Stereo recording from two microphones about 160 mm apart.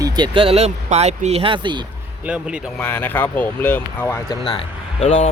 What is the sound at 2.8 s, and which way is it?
Speech, 15° left (ahead or behind).